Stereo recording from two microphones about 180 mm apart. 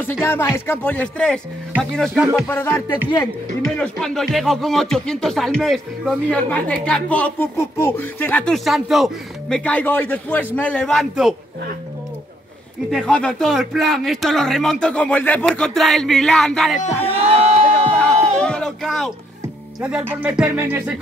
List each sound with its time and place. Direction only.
0.0 s speech: 15° left (ahead or behind)
2.4 s speech: 15° left (ahead or behind)
12.9 s speech: 5° left (ahead or behind)
17.4 s a sound: 35° right (ahead or behind)
17.9 s a sound: 5° left (ahead or behind)
19.8 s speech: 5° right (ahead or behind)